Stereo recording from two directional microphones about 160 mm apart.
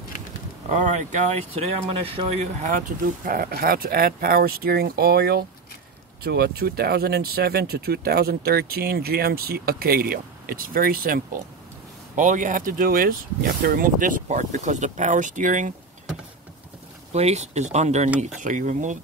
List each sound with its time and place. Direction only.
0.7 s speech: 50° right (ahead or behind)
3.3 s speech: 65° right (ahead or behind)
12.2 s speech: 50° right (ahead or behind)
17.1 s speech: 45° right (ahead or behind)